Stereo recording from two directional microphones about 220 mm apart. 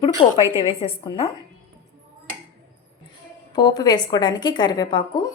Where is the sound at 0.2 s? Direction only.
25° left (ahead or behind).